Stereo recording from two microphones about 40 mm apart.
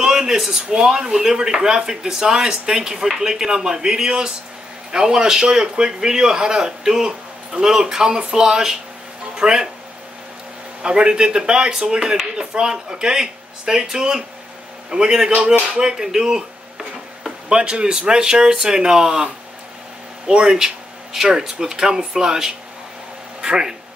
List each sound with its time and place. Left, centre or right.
0.0 s speech: centre
10.8 s speech: right